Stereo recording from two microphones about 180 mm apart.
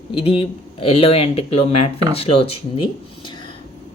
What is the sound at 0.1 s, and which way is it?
Speech, 30° left (ahead or behind).